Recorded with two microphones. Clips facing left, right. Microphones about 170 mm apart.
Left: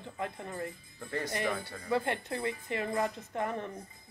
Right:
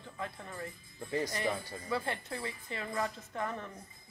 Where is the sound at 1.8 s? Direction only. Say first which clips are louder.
Left 5 dB; 20° left (ahead or behind).